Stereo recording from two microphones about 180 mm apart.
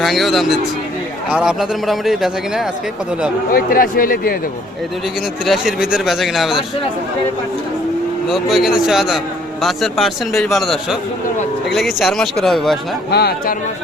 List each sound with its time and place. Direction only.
0.0 s a man's voice: centre (ahead or behind)
3.5 s speech: 55° left (ahead or behind)
5.5 s a man's voice: 5° right (ahead or behind)
8.3 s a man's voice: centre (ahead or behind)
13.1 s speech: 65° left (ahead or behind)